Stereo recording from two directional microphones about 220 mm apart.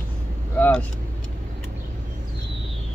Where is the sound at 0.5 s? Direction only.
5° left (ahead or behind).